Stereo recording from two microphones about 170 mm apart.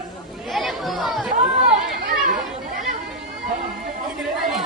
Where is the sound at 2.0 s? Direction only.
60° right (ahead or behind).